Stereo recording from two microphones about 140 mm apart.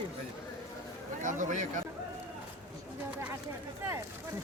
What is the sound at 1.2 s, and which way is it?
Speech, 65° right (ahead or behind).